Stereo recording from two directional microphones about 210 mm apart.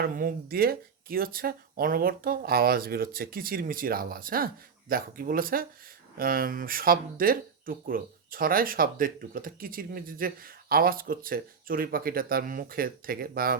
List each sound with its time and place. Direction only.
0.0 s speech: 45° right (ahead or behind)